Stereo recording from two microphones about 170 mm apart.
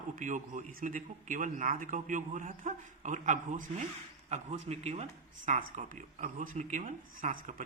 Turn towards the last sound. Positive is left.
turn(degrees=-50)  # may be behind; listen again after turning